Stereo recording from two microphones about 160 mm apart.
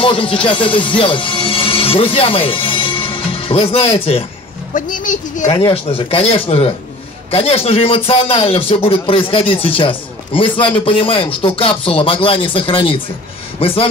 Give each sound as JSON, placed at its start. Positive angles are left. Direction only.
{"t": 0.0, "sound": "speech", "side_deg": 35}
{"t": 4.7, "sound": "speech", "side_deg": 55}
{"t": 5.5, "sound": "a man's voice", "side_deg": 35}